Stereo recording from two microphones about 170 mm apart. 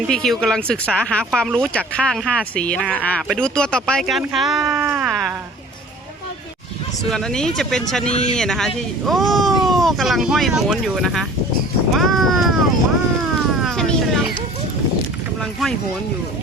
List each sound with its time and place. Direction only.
0.1 s speech: 5° left (ahead or behind)
7.1 s speech: 5° left (ahead or behind)
8.1 s speech: 40° left (ahead or behind)
8.4 s speech: centre (ahead or behind)
11.9 s a sound: centre (ahead or behind)
13.6 s vehicle: centre (ahead or behind)